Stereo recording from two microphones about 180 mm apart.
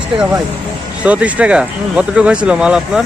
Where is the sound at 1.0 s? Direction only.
5° right (ahead or behind).